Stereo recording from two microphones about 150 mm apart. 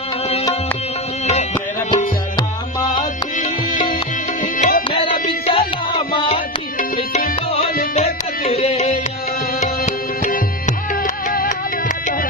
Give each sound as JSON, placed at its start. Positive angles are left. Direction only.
{"t": 4.6, "sound": "music", "side_deg": 80}
{"t": 5.5, "sound": "music", "side_deg": 35}
{"t": 7.9, "sound": "music", "side_deg": 45}
{"t": 11.2, "sound": "music", "side_deg": 55}